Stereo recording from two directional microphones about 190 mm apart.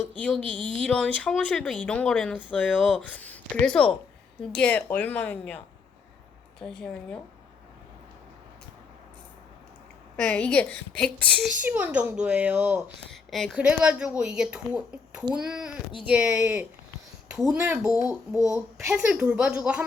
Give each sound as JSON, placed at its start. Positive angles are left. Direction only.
{"t": 0.2, "sound": "a woman's voice", "side_deg": 5}
{"t": 6.6, "sound": "speech", "side_deg": 5}
{"t": 10.2, "sound": "a woman's voice", "side_deg": 5}
{"t": 11.6, "sound": "a woman's voice", "side_deg": -10}
{"t": 18.3, "sound": "a woman's voice", "side_deg": 15}
{"t": 18.9, "sound": "a woman's voice", "side_deg": -5}